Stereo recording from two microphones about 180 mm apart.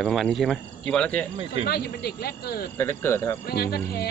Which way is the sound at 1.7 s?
60° left (ahead or behind).